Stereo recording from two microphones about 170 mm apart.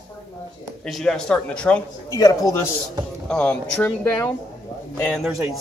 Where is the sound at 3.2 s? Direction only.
5° left (ahead or behind).